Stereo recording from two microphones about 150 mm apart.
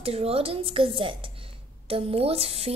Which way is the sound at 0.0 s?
40° right (ahead or behind).